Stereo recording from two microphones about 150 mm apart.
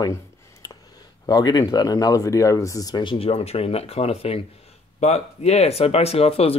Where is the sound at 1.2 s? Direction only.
25° left (ahead or behind).